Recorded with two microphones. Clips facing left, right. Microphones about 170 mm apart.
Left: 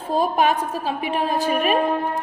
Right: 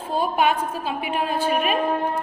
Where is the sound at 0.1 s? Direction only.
40° left (ahead or behind).